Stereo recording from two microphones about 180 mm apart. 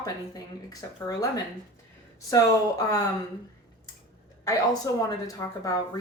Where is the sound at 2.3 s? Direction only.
20° left (ahead or behind).